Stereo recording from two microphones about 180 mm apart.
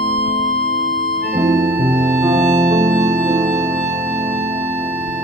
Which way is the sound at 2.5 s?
15° right (ahead or behind).